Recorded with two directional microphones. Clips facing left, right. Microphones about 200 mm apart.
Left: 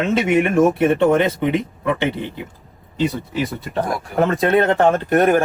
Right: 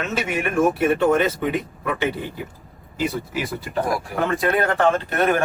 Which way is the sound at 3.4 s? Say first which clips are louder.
Left 4 dB; centre (ahead or behind).